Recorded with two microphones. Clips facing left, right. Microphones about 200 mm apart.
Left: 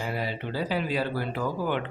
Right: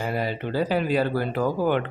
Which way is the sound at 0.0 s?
50° right (ahead or behind).